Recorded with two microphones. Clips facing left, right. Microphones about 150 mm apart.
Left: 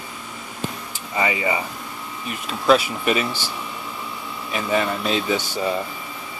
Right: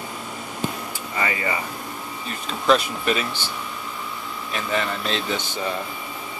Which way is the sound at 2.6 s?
5° left (ahead or behind).